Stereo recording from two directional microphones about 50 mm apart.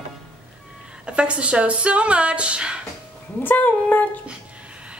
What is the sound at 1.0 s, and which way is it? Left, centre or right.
A woman's voice, right.